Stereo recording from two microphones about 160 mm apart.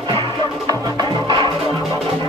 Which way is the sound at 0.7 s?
25° right (ahead or behind).